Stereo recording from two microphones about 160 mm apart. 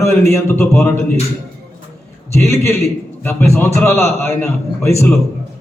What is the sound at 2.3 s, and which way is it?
A man's voice, 15° left (ahead or behind).